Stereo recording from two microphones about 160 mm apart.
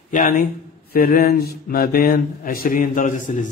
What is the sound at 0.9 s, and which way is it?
Speech, 70° left (ahead or behind).